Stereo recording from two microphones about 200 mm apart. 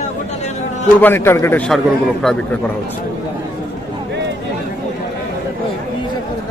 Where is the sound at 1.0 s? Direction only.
10° left (ahead or behind).